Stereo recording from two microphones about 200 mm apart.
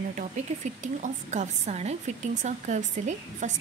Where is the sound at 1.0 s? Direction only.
35° right (ahead or behind).